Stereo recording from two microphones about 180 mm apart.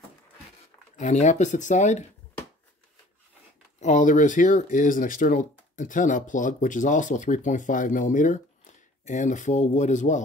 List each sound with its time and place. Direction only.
0.9 s speech: 40° left (ahead or behind)
3.8 s speech: 45° left (ahead or behind)